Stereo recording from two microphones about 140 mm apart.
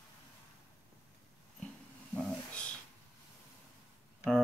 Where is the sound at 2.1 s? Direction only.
5° left (ahead or behind).